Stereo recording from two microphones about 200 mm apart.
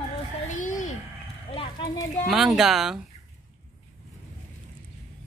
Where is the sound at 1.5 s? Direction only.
20° left (ahead or behind).